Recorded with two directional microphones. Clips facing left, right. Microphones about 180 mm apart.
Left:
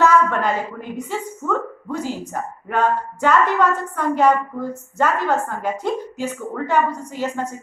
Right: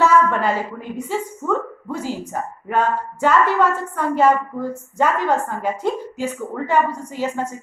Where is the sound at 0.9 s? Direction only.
10° right (ahead or behind).